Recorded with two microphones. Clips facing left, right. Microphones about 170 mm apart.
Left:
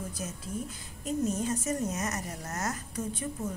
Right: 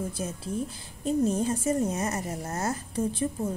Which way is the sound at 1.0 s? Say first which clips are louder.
Right 5 dB; 30° right (ahead or behind).